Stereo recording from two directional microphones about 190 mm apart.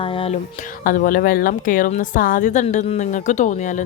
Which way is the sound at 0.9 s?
45° left (ahead or behind).